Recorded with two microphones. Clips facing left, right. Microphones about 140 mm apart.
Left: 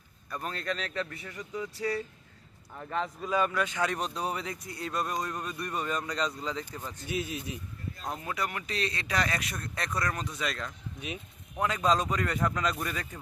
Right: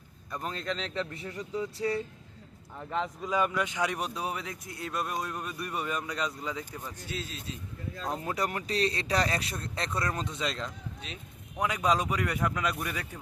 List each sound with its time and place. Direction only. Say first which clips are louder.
0.3 s speech: even; 20° right (ahead or behind)
7.1 s speech: left 6 dB; 15° left (ahead or behind)
8.1 s speech: right 3 dB; 35° right (ahead or behind)
11.0 s speech: left 9 dB; 15° left (ahead or behind)
11.5 s speech: left 1 dB; 10° right (ahead or behind)